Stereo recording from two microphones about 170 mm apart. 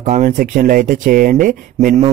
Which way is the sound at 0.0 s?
45° right (ahead or behind).